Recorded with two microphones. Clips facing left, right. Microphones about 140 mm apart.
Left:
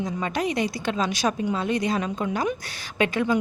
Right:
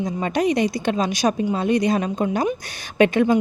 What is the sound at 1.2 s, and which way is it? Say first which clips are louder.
Speech: right 5 dB; 40° right (ahead or behind).